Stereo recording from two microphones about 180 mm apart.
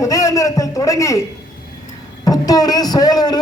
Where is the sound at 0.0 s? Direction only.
20° left (ahead or behind).